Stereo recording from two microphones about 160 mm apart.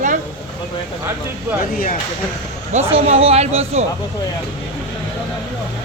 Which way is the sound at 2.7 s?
45° right (ahead or behind).